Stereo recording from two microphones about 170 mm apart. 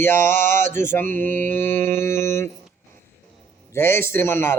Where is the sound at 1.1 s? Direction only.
10° left (ahead or behind).